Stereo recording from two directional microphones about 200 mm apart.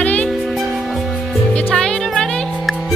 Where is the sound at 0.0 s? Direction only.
5° left (ahead or behind).